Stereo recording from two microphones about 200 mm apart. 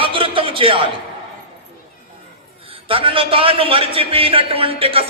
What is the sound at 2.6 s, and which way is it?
A man's voice, 30° right (ahead or behind).